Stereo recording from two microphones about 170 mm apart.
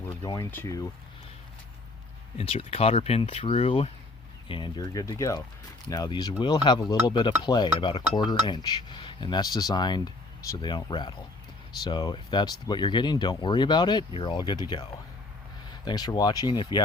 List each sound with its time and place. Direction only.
0.2 s speech: 15° left (ahead or behind)
2.4 s speech: 35° left (ahead or behind)